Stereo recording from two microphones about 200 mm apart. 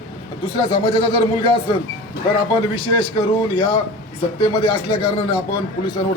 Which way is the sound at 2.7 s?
25° left (ahead or behind).